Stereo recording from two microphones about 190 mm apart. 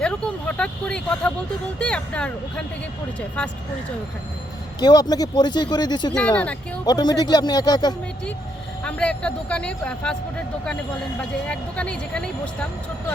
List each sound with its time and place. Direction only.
0.0 s speech: 5° left (ahead or behind)
4.8 s speech: 20° left (ahead or behind)
6.1 s speech: 5° left (ahead or behind)
6.8 s speech: 20° left (ahead or behind)
8.8 s speech: 5° left (ahead or behind)
11.2 s speech: 5° left (ahead or behind)